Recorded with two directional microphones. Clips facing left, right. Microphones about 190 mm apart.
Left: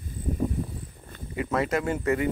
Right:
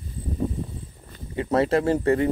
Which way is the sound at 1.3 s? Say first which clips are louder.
Right 5 dB; 30° right (ahead or behind).